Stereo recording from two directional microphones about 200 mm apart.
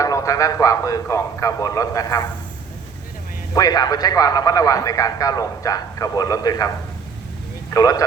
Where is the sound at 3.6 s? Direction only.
20° left (ahead or behind).